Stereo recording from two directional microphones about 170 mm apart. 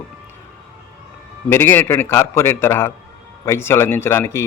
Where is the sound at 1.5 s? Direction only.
15° left (ahead or behind).